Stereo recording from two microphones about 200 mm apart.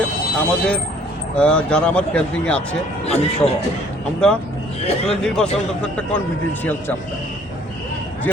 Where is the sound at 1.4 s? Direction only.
5° left (ahead or behind).